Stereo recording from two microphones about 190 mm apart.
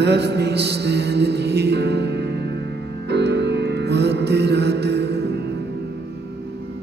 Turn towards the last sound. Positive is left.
turn(degrees=-60)  # may be behind; listen again after turning